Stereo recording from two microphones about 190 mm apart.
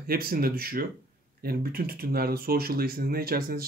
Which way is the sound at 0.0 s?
50° right (ahead or behind).